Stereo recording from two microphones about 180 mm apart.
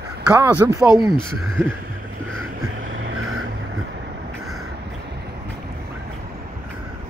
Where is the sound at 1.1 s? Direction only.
Centre (ahead or behind).